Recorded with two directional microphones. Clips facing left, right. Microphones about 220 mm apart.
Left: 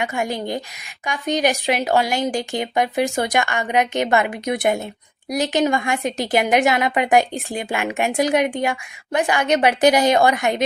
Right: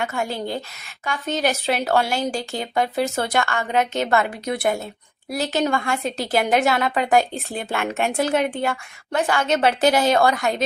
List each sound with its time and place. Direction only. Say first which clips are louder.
0.0 s a woman's voice: left 2 dB; 15° left (ahead or behind)